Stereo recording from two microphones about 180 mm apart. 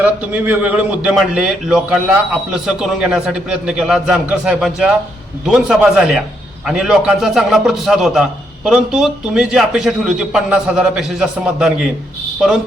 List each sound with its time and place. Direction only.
0.0 s a man's voice: 10° right (ahead or behind)